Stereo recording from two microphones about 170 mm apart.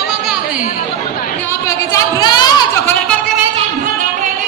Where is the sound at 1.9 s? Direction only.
25° left (ahead or behind).